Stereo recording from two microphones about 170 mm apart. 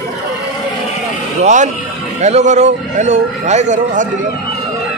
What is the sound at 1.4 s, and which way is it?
A man's voice, 45° right (ahead or behind).